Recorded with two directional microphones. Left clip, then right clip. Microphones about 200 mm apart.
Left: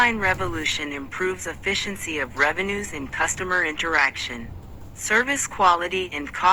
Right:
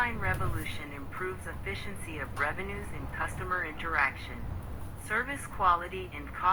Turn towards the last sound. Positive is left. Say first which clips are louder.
# left 12 dB
turn(degrees=35)  # may be behind; listen again after turning